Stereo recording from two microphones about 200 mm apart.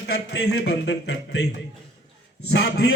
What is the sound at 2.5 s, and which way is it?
Speech, 55° left (ahead or behind).